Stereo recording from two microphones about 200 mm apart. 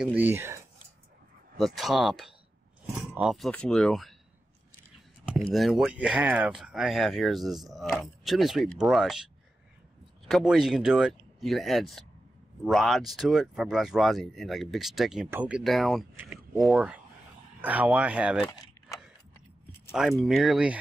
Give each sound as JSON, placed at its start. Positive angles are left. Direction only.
{"t": 0.0, "sound": "speech", "side_deg": -10}
{"t": 1.6, "sound": "speech", "side_deg": 0}
{"t": 5.5, "sound": "speech", "side_deg": 0}
{"t": 18.4, "sound": "keys jangling", "side_deg": 20}
{"t": 19.9, "sound": "speech", "side_deg": 0}